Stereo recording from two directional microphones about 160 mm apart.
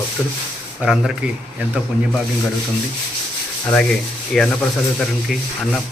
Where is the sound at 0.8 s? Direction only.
5° right (ahead or behind).